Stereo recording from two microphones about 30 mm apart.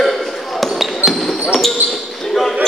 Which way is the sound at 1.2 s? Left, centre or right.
Centre.